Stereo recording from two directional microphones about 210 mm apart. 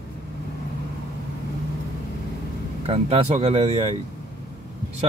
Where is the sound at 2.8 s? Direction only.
25° right (ahead or behind).